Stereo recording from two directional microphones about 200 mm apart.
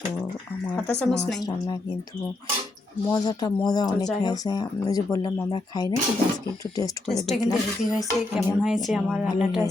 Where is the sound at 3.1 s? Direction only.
20° left (ahead or behind).